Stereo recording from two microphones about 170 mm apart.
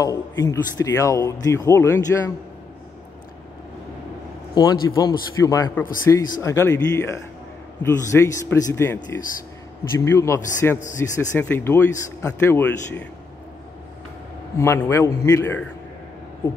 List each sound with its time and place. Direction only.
0.0 s speech: 20° left (ahead or behind)
4.6 s speech: 25° left (ahead or behind)
14.6 s speech: 15° left (ahead or behind)